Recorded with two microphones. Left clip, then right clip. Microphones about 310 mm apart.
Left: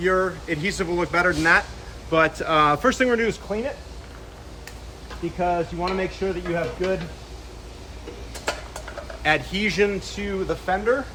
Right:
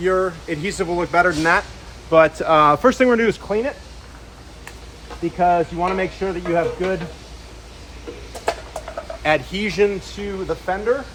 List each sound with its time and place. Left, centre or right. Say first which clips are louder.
0.0 s speech: right 2 dB; centre; by 3.7 s right
5.4 s speech: right 7 dB; right
9.2 s speech: right 2 dB; centre